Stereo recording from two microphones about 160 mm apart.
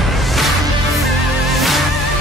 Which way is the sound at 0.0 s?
Centre (ahead or behind).